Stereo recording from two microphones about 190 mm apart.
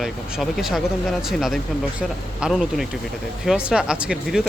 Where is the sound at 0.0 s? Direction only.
Centre (ahead or behind).